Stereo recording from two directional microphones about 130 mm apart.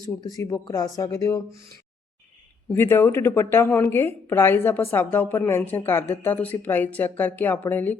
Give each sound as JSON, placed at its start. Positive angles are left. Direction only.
{"t": 0.2, "sound": "speech", "side_deg": 30}
{"t": 2.7, "sound": "a woman's voice", "side_deg": 15}